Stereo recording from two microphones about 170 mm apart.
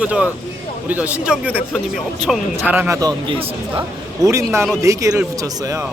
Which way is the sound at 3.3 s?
30° right (ahead or behind).